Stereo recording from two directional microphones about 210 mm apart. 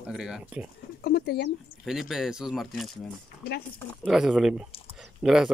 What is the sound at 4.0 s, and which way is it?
Speech, centre (ahead or behind).